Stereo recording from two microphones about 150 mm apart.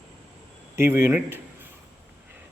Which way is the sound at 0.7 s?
15° right (ahead or behind).